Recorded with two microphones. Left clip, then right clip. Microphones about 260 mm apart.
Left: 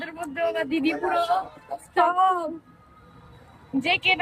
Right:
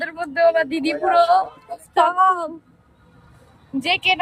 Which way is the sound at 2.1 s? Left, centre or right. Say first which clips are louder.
Right 4 dB; centre.